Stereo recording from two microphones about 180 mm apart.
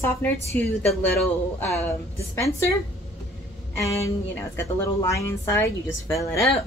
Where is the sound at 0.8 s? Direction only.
Centre (ahead or behind).